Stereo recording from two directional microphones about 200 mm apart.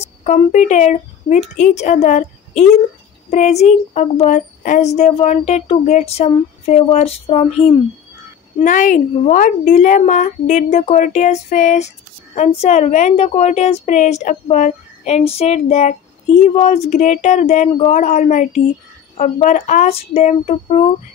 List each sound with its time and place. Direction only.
0.2 s a woman's voice: 40° left (ahead or behind)